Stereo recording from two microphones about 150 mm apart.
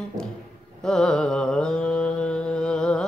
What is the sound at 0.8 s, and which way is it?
Mantra, 5° left (ahead or behind).